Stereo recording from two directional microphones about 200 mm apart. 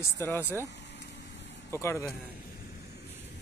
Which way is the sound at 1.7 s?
15° left (ahead or behind).